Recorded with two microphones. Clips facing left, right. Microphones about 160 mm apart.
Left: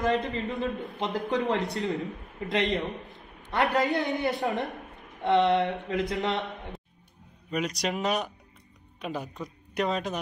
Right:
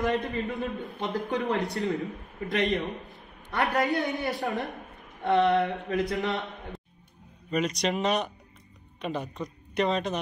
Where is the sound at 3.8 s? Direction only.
20° left (ahead or behind).